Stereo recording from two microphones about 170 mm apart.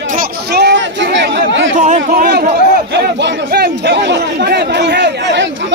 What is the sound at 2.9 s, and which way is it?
Speech, 80° right.